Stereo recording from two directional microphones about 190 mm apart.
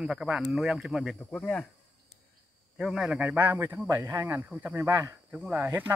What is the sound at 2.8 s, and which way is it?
A man's voice, 5° right (ahead or behind).